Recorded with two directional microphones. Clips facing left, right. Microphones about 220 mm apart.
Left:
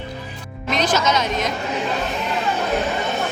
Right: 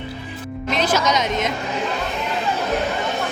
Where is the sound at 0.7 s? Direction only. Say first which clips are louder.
Even; 5° right (ahead or behind).